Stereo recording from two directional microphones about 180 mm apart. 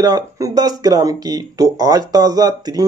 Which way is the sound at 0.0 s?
20° right (ahead or behind).